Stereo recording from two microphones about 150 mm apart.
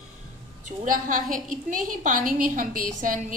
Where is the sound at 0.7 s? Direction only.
65° right (ahead or behind).